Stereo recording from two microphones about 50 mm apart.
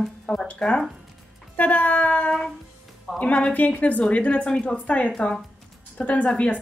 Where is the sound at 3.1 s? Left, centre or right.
Centre.